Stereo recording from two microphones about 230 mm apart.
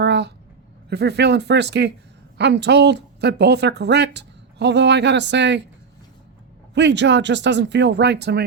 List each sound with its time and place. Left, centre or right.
0.0 s a sound: right
0.9 s speech: right
6.7 s speech: right